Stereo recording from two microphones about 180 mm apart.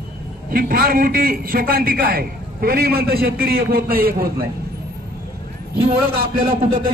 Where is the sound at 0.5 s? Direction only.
55° right (ahead or behind).